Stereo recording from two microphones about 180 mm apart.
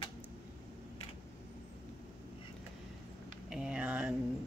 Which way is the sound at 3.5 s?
5° right (ahead or behind).